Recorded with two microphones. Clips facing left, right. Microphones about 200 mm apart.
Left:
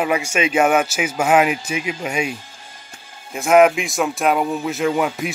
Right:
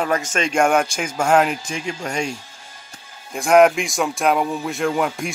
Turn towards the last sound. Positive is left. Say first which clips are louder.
# left 2 dB
turn(degrees=0)  # may be behind; listen again after turning